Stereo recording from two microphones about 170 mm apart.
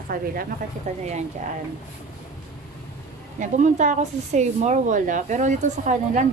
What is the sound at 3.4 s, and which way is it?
Speech, 45° right (ahead or behind).